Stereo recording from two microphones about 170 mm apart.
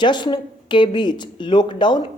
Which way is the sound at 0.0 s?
25° left (ahead or behind).